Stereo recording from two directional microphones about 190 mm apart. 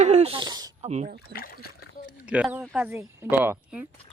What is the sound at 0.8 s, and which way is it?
Speech, 35° right (ahead or behind).